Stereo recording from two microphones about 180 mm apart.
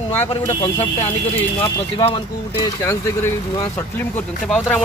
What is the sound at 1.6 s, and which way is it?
Speech, 30° left (ahead or behind).